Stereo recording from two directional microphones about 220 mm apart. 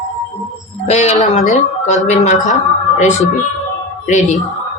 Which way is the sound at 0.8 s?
30° left (ahead or behind).